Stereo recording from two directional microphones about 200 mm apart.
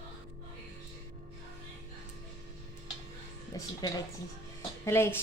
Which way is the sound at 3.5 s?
20° left (ahead or behind).